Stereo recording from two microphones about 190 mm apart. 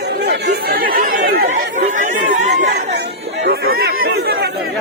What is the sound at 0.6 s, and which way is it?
Chatter, 50° right (ahead or behind).